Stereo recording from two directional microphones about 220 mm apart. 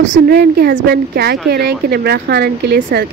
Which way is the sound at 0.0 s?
50° right (ahead or behind).